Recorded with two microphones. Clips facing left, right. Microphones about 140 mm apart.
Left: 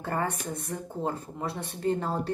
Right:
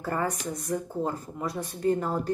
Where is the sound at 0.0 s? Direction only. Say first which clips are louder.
Right 1 dB; 30° left (ahead or behind).